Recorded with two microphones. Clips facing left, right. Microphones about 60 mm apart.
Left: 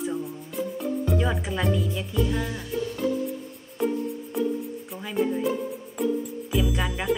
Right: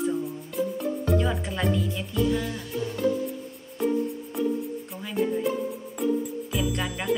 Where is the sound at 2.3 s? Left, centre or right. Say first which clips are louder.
Right 1 dB; centre.